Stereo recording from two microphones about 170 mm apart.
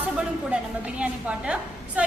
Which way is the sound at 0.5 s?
5° right (ahead or behind).